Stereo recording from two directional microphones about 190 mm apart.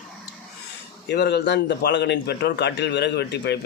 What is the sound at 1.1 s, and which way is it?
A man's voice, 60° left (ahead or behind).